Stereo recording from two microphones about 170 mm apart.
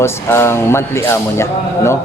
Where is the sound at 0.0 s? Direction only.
15° left (ahead or behind).